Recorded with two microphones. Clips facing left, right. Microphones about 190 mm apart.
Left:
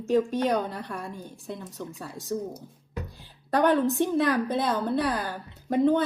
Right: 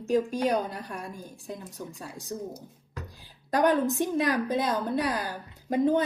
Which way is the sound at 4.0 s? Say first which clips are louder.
Left 2 dB; 15° right (ahead or behind).